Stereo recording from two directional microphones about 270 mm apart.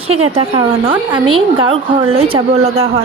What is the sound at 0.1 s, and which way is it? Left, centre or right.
A woman's voice, right.